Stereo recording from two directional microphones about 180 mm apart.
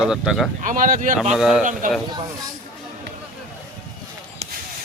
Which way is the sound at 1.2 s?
5° right (ahead or behind).